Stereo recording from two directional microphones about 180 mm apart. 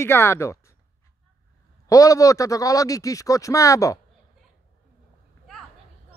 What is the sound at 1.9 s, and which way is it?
Speech, 20° left (ahead or behind).